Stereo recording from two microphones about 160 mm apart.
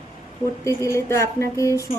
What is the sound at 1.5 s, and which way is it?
Music, 20° left (ahead or behind).